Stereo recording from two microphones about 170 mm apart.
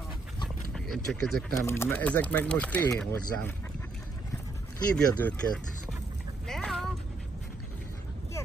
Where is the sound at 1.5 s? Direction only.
15° left (ahead or behind).